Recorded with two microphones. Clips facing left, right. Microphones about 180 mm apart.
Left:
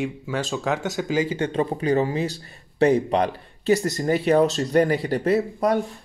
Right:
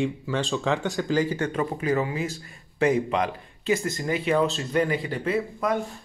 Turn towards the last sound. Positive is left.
turn(degrees=40)  # may be behind; listen again after turning